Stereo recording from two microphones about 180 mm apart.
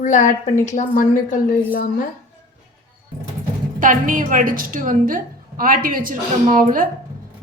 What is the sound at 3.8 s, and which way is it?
A woman's voice, 50° right (ahead or behind).